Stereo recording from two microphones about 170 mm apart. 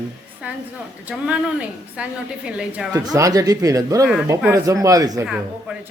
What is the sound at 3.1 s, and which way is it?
Speech, 20° right (ahead or behind).